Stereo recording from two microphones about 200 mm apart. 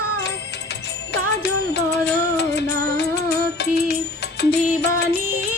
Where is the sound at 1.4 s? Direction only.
55° left (ahead or behind).